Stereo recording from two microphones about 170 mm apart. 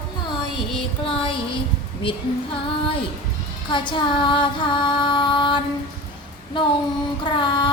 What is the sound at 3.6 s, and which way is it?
Female singing, 30° left (ahead or behind).